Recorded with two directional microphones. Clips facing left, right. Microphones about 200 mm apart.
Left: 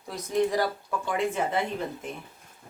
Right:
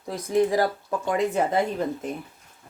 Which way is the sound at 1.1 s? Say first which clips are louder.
Right 4 dB; 40° right (ahead or behind).